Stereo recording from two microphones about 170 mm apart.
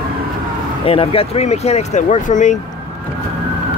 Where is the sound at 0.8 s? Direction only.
35° left (ahead or behind).